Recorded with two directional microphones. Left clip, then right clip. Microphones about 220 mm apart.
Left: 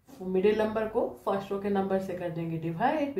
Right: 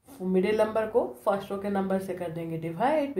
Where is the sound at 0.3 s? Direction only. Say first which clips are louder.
Right 1 dB; 45° right (ahead or behind).